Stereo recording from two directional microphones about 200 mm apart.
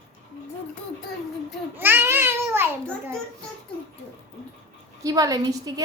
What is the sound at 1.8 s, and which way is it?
Speech, 10° right (ahead or behind).